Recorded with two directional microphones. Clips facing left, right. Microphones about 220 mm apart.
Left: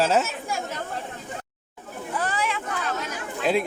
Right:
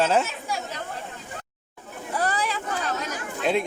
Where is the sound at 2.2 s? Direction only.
35° right (ahead or behind).